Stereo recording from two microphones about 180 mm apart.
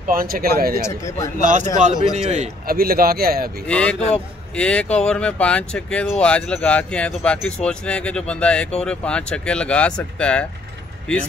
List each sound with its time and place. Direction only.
0.0 s speech: 50° right (ahead or behind)
0.7 s speech: 15° left (ahead or behind)
1.4 s a man's voice: 45° right (ahead or behind)
2.6 s speech: 55° right (ahead or behind)
3.6 s speech: 5° left (ahead or behind)